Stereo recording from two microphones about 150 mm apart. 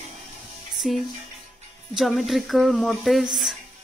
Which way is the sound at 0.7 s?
Centre (ahead or behind).